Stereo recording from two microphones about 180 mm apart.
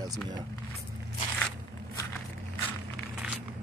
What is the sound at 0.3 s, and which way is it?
Speech, 25° right (ahead or behind).